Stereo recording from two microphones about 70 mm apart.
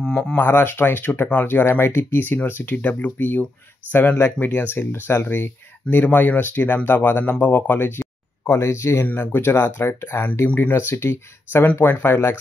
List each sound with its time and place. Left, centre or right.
0.4 s speech: left
8.5 s speech: left
9.0 s speech: left